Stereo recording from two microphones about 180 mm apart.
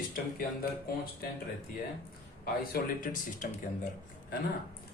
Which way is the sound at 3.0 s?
50° left (ahead or behind).